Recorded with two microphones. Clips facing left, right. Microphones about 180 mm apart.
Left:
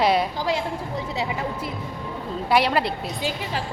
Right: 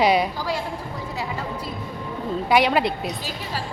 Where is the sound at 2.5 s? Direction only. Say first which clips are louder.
Right 1 dB; centre (ahead or behind).